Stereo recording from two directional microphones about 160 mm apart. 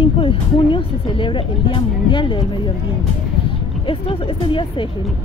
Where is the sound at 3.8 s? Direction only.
35° left (ahead or behind).